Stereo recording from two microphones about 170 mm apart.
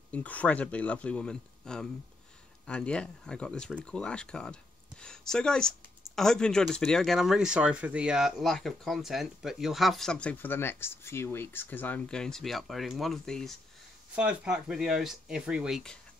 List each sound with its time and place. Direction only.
0.1 s speech: 10° left (ahead or behind)